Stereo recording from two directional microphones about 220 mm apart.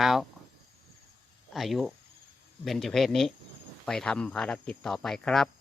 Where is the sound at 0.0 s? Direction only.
Centre (ahead or behind).